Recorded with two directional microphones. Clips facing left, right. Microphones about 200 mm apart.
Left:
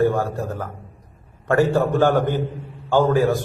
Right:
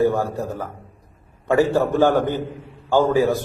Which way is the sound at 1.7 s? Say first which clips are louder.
Right 1 dB; 15° right (ahead or behind).